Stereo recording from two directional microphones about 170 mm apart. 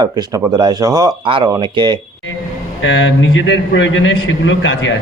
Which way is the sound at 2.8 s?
90° left.